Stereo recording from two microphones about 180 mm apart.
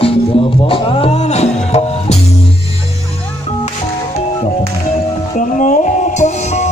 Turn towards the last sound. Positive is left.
turn(degrees=40)  # may be behind; listen again after turning